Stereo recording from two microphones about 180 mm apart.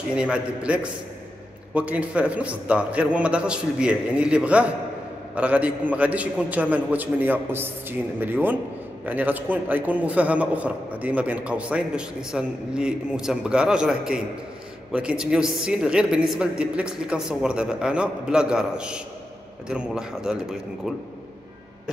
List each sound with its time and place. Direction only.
0.1 s a woman's voice: 5° right (ahead or behind)